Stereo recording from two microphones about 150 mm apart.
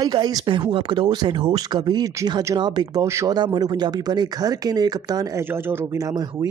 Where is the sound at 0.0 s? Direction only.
25° right (ahead or behind).